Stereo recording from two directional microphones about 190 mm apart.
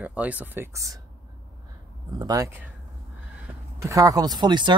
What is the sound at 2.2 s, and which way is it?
Speech, 15° right (ahead or behind).